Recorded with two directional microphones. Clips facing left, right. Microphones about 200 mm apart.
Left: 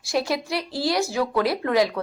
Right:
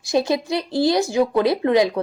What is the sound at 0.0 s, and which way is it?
A woman's voice, 20° right (ahead or behind).